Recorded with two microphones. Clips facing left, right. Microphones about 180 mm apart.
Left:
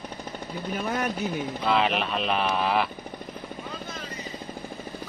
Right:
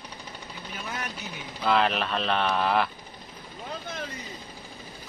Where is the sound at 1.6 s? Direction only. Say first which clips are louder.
Right 1 dB; centre (ahead or behind).